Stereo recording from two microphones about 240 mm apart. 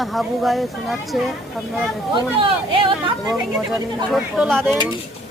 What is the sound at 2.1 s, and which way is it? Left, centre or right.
Speech, right.